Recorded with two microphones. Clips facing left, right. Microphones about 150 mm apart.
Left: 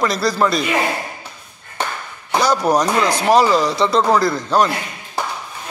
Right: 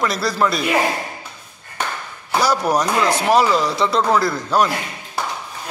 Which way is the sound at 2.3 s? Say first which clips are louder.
Left 2 dB; 5° right (ahead or behind).